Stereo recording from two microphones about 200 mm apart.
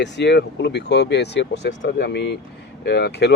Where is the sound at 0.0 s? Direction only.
60° left (ahead or behind).